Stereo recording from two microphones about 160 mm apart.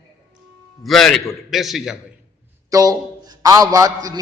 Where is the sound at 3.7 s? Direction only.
20° right (ahead or behind).